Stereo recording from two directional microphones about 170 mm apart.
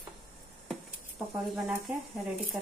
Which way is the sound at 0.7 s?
Centre (ahead or behind).